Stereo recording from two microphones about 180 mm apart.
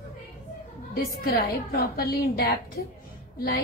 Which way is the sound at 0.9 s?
55° left (ahead or behind).